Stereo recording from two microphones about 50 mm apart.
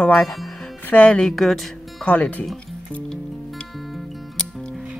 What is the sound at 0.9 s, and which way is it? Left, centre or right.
Speech, left.